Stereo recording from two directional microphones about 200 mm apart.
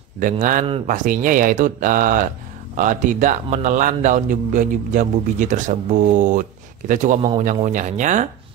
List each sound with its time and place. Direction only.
0.2 s a man's voice: 40° right (ahead or behind)